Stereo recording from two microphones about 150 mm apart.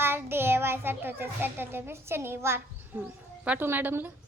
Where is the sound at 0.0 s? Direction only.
15° right (ahead or behind).